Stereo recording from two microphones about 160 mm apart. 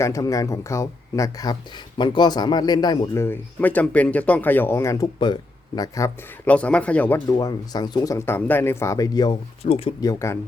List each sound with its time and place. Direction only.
0.0 s speech: 20° left (ahead or behind)
3.2 s speech: 15° left (ahead or behind)
6.4 s speech: 10° left (ahead or behind)
7.3 s speech: 25° left (ahead or behind)
9.6 s speech: 40° left (ahead or behind)
10.0 s speech: 20° left (ahead or behind)